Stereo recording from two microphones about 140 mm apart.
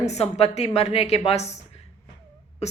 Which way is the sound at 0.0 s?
50° left (ahead or behind).